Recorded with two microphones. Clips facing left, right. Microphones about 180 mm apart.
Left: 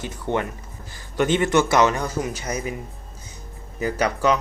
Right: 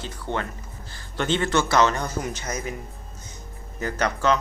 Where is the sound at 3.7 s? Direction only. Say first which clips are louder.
Left 3 dB; 10° left (ahead or behind).